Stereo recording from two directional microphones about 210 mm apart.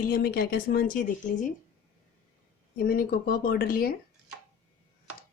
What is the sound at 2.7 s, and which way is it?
Speech, 45° left (ahead or behind).